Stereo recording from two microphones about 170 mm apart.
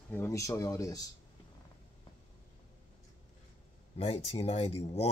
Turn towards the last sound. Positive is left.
turn(degrees=40)  # may be behind; listen again after turning